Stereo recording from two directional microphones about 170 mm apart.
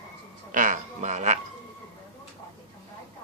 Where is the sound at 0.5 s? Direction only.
50° right (ahead or behind).